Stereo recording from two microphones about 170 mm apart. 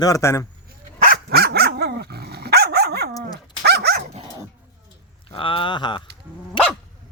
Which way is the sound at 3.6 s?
75° right (ahead or behind).